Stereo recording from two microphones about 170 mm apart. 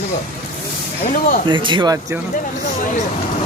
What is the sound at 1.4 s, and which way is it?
Speech, 30° right (ahead or behind).